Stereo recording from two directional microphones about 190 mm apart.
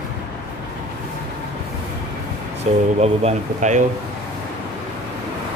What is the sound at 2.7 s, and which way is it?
Speech, 35° right (ahead or behind).